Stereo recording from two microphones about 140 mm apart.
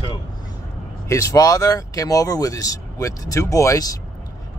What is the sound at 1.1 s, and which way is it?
Speech, 25° left (ahead or behind).